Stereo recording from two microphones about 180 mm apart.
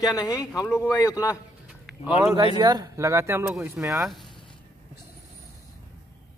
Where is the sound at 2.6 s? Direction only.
20° right (ahead or behind).